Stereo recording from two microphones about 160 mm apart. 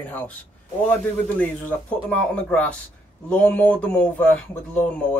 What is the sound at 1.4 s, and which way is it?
Speech, 10° left (ahead or behind).